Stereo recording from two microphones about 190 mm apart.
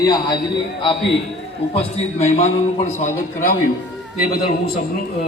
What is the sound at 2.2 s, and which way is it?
Speech, 35° left (ahead or behind).